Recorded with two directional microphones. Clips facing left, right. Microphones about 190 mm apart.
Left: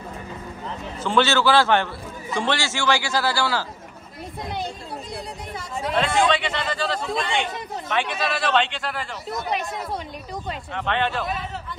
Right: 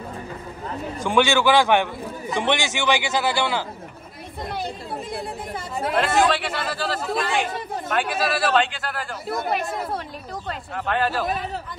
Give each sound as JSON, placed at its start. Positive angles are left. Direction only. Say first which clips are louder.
{"t": 1.0, "sound": "a man's voice", "louder": "right 1 dB", "side_deg": -15}
{"t": 5.9, "sound": "speech", "louder": "right 1 dB", "side_deg": -5}
{"t": 10.7, "sound": "speech", "louder": "right 1 dB", "side_deg": -5}